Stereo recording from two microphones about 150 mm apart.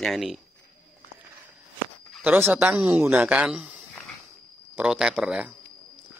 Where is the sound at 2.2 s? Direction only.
10° right (ahead or behind).